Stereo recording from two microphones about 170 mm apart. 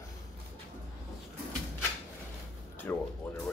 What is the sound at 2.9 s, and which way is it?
Music, 10° left (ahead or behind).